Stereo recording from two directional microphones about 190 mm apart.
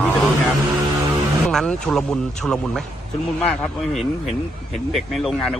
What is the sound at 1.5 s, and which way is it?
Speech, 5° left (ahead or behind).